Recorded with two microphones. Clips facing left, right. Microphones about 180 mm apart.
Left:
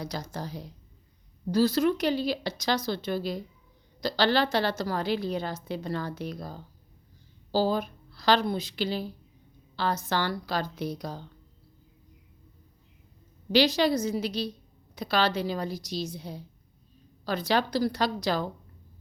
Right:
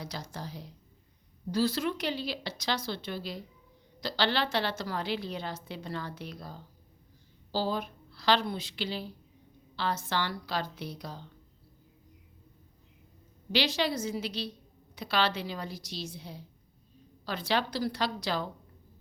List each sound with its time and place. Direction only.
0.0 s a woman's voice: 40° left (ahead or behind)
13.5 s a woman's voice: 40° left (ahead or behind)